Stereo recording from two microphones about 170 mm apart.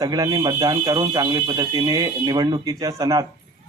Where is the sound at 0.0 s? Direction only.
20° right (ahead or behind).